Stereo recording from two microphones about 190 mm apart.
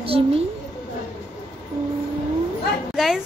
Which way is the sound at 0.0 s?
30° right (ahead or behind).